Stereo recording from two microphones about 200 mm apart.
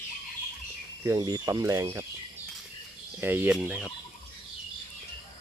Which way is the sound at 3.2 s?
10° right (ahead or behind).